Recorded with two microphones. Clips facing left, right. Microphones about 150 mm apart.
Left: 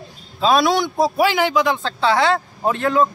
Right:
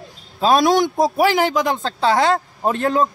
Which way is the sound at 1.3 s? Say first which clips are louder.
Even; 40° right (ahead or behind).